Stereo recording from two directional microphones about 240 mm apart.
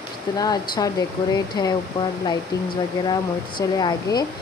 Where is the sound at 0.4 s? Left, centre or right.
Centre.